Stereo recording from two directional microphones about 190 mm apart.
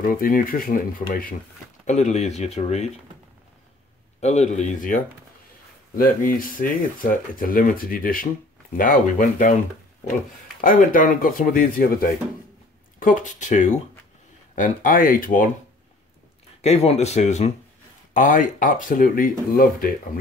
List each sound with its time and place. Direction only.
0.1 s speech: 50° left (ahead or behind)
1.9 s speech: 35° left (ahead or behind)
4.2 s speech: 35° left (ahead or behind)
10.6 s speech: 45° left (ahead or behind)
16.6 s speech: 35° left (ahead or behind); by 19.9 s 50° left (ahead or behind)